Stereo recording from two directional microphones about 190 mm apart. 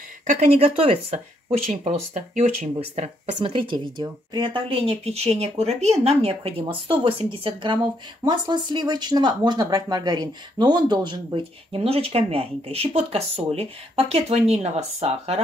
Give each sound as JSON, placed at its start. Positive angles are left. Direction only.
{"t": 0.3, "sound": "speech", "side_deg": -35}
{"t": 3.3, "sound": "speech", "side_deg": -25}